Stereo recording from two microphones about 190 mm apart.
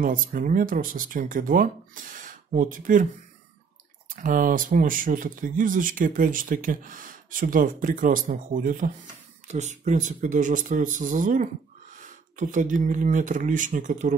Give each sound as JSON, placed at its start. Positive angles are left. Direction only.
{"t": 0.0, "sound": "speech", "side_deg": -45}
{"t": 4.1, "sound": "speech", "side_deg": -45}